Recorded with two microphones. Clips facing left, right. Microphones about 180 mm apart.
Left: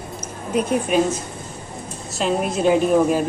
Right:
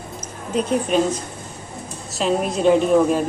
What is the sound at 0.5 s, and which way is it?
Speech, 10° left (ahead or behind).